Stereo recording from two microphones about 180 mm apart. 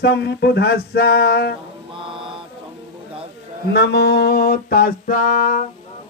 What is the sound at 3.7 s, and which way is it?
Speech, 70° left (ahead or behind).